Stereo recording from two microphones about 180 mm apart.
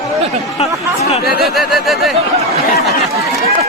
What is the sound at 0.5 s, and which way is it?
Speech, 35° left (ahead or behind).